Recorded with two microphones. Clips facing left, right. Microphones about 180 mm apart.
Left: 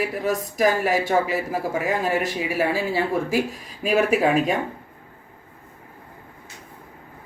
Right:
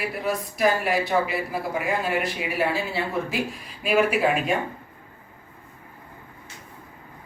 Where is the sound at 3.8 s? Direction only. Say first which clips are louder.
Left 2 dB; 40° left (ahead or behind).